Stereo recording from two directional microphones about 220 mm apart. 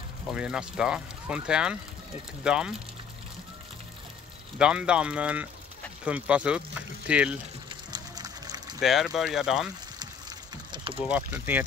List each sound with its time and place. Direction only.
0.3 s speech: 5° right (ahead or behind)
4.6 s speech: 5° right (ahead or behind)
7.9 s music: 20° right (ahead or behind)
8.7 s speech: centre (ahead or behind)
10.5 s a sound: 20° right (ahead or behind)
11.1 s speech: 5° right (ahead or behind)